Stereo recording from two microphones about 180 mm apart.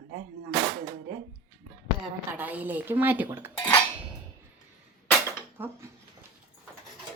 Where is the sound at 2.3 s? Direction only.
10° right (ahead or behind).